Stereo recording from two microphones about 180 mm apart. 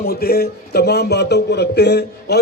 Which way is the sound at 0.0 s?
60° left (ahead or behind).